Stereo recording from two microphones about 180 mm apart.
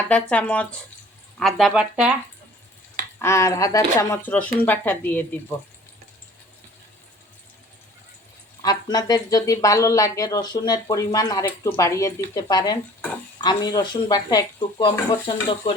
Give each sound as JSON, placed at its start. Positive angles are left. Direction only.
{"t": 0.1, "sound": "speech", "side_deg": 5}
{"t": 3.2, "sound": "speech", "side_deg": 15}
{"t": 8.6, "sound": "speech", "side_deg": 20}